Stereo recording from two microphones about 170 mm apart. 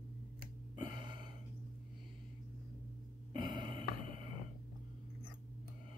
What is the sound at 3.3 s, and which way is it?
Burping, 25° right (ahead or behind).